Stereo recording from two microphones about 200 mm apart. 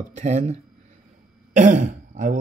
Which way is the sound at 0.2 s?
35° right (ahead or behind).